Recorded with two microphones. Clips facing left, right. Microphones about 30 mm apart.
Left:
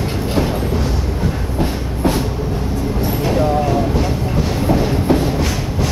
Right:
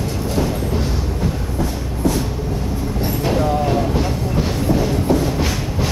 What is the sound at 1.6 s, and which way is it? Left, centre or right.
Train, left.